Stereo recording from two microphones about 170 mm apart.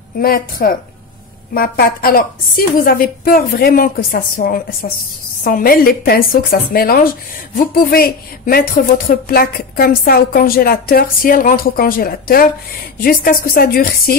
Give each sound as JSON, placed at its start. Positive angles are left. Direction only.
{"t": 0.2, "sound": "speech", "side_deg": 60}